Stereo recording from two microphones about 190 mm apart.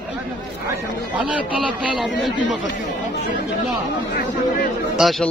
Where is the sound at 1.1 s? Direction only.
5° right (ahead or behind).